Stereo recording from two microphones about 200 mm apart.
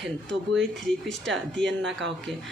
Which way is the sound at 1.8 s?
65° right (ahead or behind).